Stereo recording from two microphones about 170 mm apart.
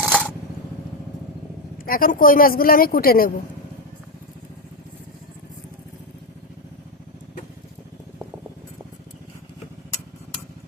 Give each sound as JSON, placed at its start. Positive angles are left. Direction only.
{"t": 0.1, "sound": "camera", "side_deg": 5}
{"t": 1.8, "sound": "speech", "side_deg": 55}